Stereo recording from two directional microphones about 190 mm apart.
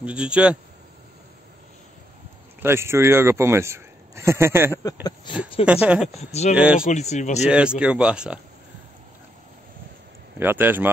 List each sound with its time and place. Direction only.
0.0 s speech: 5° right (ahead or behind)
2.6 s speech: 15° right (ahead or behind)
5.0 s speech: 25° left (ahead or behind)
5.7 s speech: 5° right (ahead or behind)
6.9 s speech: 35° left (ahead or behind)
7.4 s speech: 5° right (ahead or behind)
10.4 s speech: 10° right (ahead or behind)